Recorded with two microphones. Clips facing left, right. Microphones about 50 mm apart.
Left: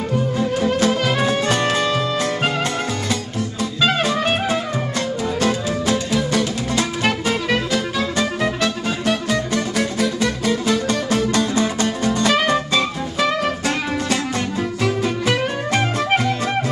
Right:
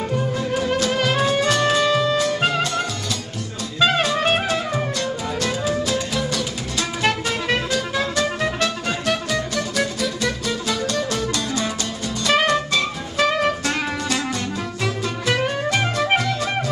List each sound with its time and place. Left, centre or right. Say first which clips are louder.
1.5 s music: right 1 dB; centre
8.4 s music: left 2 dB; centre
9.5 s music: left 2 dB; left
13.3 s music: even; centre